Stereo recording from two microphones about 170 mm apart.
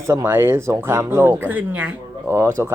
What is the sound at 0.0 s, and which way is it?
Speech, 15° right (ahead or behind).